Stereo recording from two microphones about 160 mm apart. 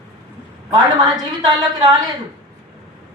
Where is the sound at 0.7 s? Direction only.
25° right (ahead or behind).